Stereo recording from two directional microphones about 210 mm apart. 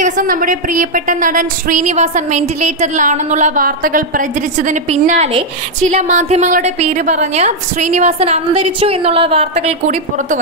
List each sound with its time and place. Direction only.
0.0 s a woman's voice: 40° right (ahead or behind)